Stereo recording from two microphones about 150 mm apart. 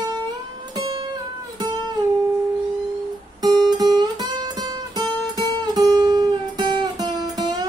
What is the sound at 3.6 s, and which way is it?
Music, 25° right (ahead or behind).